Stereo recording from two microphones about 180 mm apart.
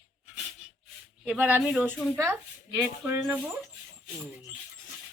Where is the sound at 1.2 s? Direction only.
5° right (ahead or behind).